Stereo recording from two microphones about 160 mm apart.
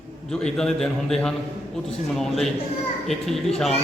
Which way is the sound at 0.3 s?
5° left (ahead or behind).